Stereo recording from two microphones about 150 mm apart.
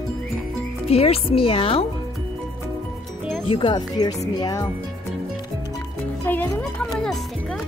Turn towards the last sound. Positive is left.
turn(degrees=10)  # may be behind; listen again after turning